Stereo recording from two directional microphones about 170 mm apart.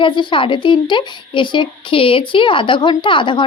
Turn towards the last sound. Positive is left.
turn(degrees=30)  # may be behind; listen again after turning